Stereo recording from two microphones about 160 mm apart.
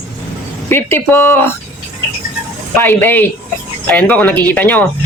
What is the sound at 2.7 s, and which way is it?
Speech, 15° left (ahead or behind).